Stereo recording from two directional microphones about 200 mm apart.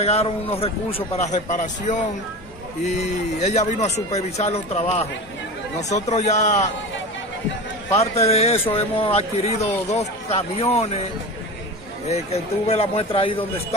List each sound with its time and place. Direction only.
0.0 s speech: 30° left (ahead or behind)
8.0 s speech: 30° left (ahead or behind)
12.1 s a man's voice: 30° left (ahead or behind)